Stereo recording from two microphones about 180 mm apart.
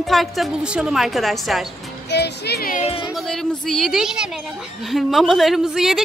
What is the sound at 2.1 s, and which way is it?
Speech, 65° left (ahead or behind).